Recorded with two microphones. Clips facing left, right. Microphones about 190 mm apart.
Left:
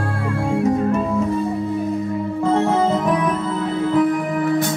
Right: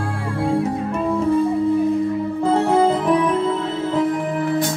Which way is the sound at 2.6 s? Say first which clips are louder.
Right 3 dB; 30° right (ahead or behind).